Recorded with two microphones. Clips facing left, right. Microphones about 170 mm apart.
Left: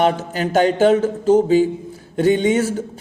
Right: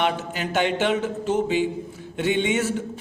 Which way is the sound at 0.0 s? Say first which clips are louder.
Left 7 dB; 40° left (ahead or behind).